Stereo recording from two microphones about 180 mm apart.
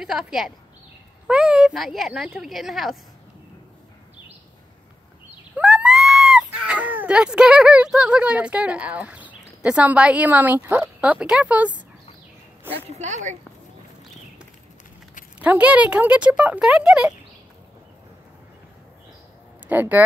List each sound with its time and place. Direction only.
0.0 s speech: 5° right (ahead or behind)
5.6 s speech: 5° right (ahead or behind)
12.7 s a woman's voice: 40° right (ahead or behind)
15.3 s speech: 5° right (ahead or behind)
19.7 s speech: 10° right (ahead or behind)